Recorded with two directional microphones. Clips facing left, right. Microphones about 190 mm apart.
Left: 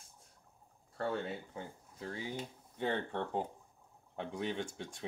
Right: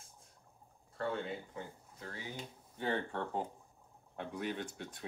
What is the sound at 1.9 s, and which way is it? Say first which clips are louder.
Speech: left 5 dB; 25° left (ahead or behind).